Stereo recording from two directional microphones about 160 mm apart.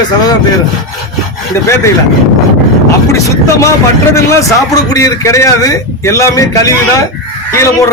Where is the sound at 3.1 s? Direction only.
20° left (ahead or behind).